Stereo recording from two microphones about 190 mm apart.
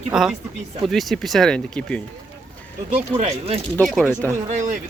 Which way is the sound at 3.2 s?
30° right (ahead or behind).